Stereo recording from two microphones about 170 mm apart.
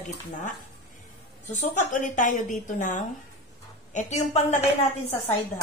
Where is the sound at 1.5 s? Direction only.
50° left (ahead or behind).